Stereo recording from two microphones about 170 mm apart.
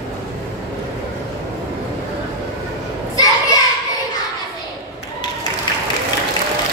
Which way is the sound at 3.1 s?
20° left (ahead or behind).